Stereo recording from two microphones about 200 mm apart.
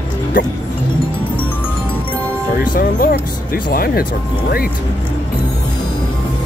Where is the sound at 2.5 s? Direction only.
45° left (ahead or behind).